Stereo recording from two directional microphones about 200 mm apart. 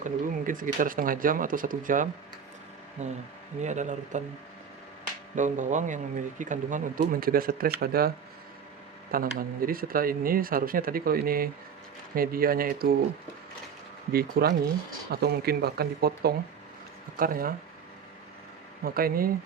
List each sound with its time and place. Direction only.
0.0 s speech: 40° right (ahead or behind)
5.3 s speech: 40° right (ahead or behind)
9.1 s speech: 45° right (ahead or behind)
14.1 s speech: 50° right (ahead or behind)
18.9 s speech: 45° right (ahead or behind)